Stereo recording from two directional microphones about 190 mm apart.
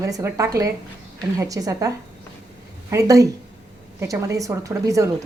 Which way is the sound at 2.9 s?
15° right (ahead or behind).